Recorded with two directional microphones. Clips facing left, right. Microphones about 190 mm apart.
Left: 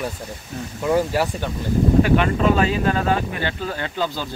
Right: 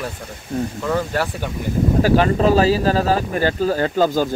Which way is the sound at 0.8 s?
15° left (ahead or behind).